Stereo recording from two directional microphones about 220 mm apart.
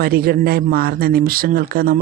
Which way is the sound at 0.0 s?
45° right (ahead or behind).